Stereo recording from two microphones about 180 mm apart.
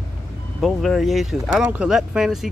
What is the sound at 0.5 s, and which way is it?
Speech, centre (ahead or behind).